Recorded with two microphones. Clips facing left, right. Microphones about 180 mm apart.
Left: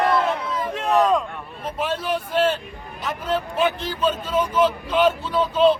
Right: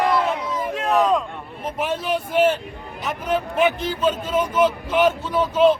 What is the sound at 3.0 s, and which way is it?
A man's voice, 15° right (ahead or behind).